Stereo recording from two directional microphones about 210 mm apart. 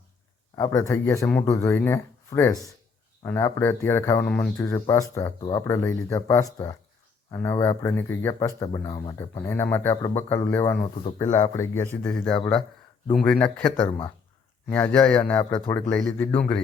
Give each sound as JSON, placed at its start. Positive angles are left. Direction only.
{"t": 0.5, "sound": "speech", "side_deg": 15}
{"t": 13.8, "sound": "speech", "side_deg": 20}
{"t": 14.7, "sound": "speech", "side_deg": 5}